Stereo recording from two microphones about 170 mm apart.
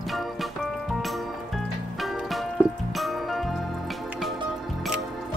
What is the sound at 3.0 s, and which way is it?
Music, centre (ahead or behind).